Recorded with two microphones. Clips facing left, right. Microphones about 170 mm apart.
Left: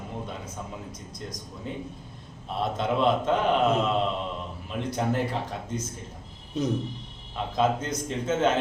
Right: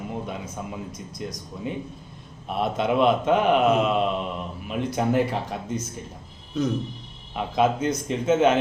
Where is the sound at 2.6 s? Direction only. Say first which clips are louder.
Right 4 dB; 15° right (ahead or behind).